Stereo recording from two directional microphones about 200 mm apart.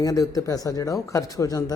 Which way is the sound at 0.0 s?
15° left (ahead or behind).